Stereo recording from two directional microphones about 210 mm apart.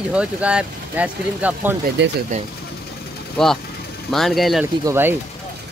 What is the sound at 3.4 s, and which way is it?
Speech, 5° left (ahead or behind).